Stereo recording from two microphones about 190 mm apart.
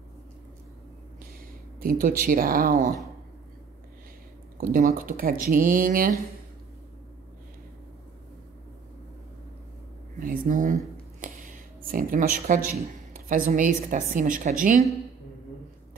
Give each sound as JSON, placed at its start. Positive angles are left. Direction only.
{"t": 1.8, "sound": "speech", "side_deg": -50}
{"t": 4.6, "sound": "speech", "side_deg": -45}
{"t": 10.1, "sound": "a sound", "side_deg": -45}
{"t": 11.1, "sound": "speech", "side_deg": -45}